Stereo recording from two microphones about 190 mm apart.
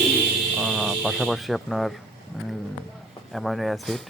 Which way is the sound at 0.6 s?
Centre (ahead or behind).